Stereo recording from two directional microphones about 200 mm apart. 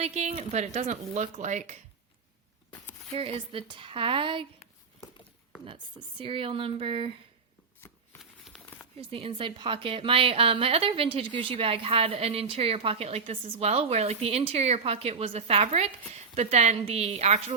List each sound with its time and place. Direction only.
0.0 s speech: 30° right (ahead or behind)
3.2 s a woman's voice: 30° right (ahead or behind)
5.6 s a woman's voice: 25° right (ahead or behind)
8.2 s a sound: centre (ahead or behind)
9.0 s a woman's voice: 30° right (ahead or behind)